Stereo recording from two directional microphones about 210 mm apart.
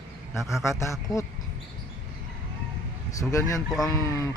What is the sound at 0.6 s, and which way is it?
Speech, 15° left (ahead or behind).